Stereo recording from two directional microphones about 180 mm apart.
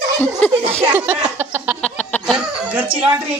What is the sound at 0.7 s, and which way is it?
Speech, 10° right (ahead or behind).